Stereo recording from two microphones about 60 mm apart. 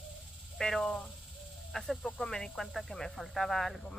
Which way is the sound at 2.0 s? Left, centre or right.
Centre.